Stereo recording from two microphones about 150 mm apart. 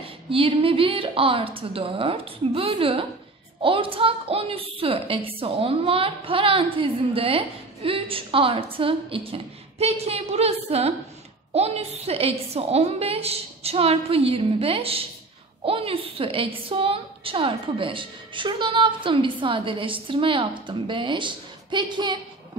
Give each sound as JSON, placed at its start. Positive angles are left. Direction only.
{"t": 0.0, "sound": "a woman's voice", "side_deg": -40}